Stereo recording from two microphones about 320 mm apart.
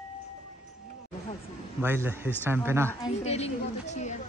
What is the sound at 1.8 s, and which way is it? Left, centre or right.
Speech, centre.